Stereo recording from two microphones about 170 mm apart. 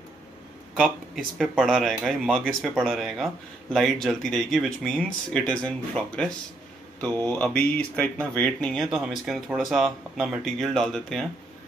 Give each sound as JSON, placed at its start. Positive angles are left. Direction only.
{"t": 0.7, "sound": "speech", "side_deg": 0}